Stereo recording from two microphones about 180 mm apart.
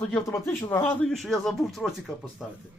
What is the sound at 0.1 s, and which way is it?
Speech, 15° left (ahead or behind).